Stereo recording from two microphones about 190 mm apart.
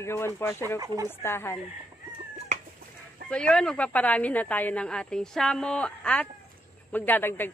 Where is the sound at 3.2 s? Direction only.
5° left (ahead or behind).